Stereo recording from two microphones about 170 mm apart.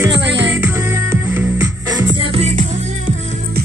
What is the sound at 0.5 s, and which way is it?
Music, 10° right (ahead or behind).